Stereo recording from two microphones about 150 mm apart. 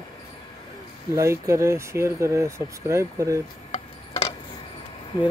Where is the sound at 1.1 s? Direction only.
20° right (ahead or behind).